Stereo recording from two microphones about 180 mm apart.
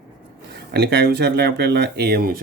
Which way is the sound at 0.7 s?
65° right (ahead or behind).